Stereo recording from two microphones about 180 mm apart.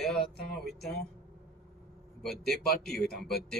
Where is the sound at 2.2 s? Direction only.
Centre (ahead or behind).